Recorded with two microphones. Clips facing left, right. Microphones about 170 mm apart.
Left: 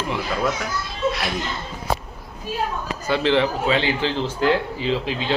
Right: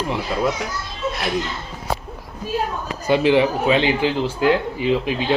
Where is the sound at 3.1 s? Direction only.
15° right (ahead or behind).